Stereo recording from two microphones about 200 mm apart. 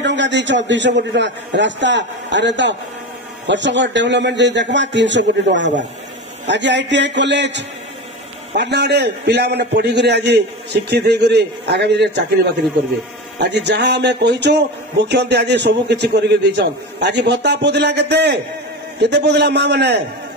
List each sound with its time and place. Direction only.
0.0 s a man's voice: 60° right (ahead or behind)
13.4 s a man's voice: 60° right (ahead or behind)